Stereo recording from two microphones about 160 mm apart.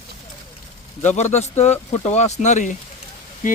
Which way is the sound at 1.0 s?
45° left (ahead or behind).